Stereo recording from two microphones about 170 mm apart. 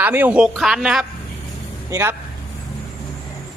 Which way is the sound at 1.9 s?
15° right (ahead or behind).